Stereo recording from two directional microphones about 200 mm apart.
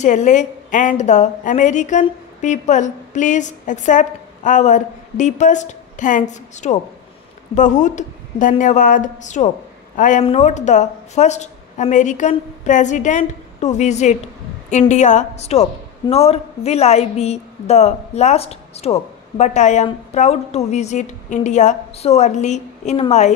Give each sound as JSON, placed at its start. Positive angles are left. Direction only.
{"t": 0.0, "sound": "a woman's voice", "side_deg": 40}